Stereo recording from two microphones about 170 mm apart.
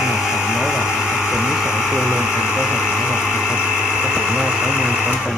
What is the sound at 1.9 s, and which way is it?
Speech, 10° left (ahead or behind).